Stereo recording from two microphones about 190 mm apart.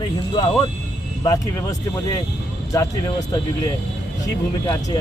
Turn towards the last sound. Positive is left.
turn(degrees=20)  # may be behind; listen again after turning